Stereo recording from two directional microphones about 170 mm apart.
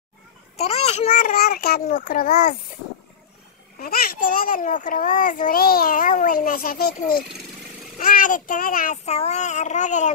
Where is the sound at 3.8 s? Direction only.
60° left (ahead or behind).